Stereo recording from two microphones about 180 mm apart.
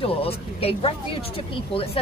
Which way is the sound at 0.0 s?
30° left (ahead or behind).